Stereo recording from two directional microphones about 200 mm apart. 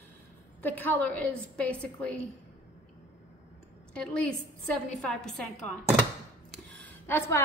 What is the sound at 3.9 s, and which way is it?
A woman's voice, 5° left (ahead or behind).